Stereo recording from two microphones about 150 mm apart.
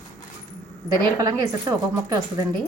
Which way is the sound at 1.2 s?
25° right (ahead or behind).